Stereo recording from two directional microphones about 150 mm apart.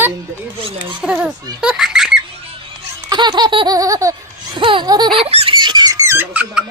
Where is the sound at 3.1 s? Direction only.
30° right (ahead or behind).